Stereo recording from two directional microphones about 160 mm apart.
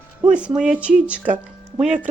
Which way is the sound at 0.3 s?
5° right (ahead or behind).